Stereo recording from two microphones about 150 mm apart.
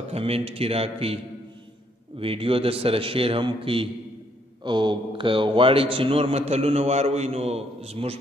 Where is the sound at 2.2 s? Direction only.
40° right (ahead or behind).